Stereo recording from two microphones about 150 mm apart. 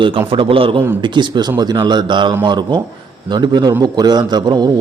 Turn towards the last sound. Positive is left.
turn(degrees=-30)  # may be behind; listen again after turning